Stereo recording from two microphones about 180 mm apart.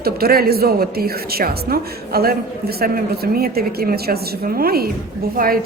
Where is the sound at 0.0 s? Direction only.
55° right (ahead or behind).